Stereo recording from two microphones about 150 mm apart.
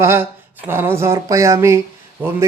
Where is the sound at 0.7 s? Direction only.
15° right (ahead or behind).